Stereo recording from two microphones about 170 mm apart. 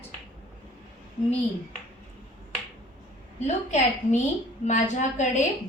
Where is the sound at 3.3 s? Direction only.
40° left (ahead or behind).